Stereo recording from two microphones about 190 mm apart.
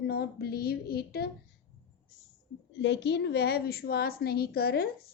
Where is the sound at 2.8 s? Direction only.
65° left (ahead or behind).